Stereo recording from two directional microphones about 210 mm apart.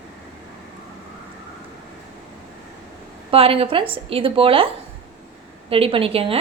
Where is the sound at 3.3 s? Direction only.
25° right (ahead or behind).